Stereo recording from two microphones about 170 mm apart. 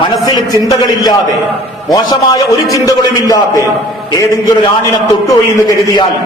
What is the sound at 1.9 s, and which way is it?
A man's voice, 20° left (ahead or behind).